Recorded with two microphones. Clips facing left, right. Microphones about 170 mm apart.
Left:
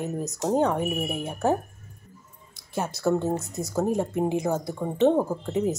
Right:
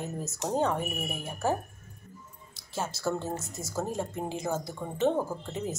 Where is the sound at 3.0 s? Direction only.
20° left (ahead or behind).